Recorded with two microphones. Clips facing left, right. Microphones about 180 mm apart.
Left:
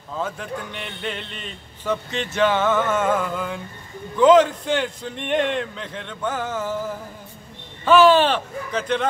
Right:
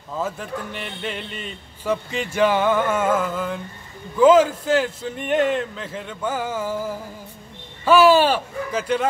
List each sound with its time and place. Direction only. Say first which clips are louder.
0.1 s a man's voice: right 1 dB; 5° right (ahead or behind)